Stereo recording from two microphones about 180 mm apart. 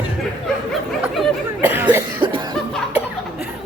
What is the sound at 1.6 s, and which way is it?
Cough, 10° right (ahead or behind).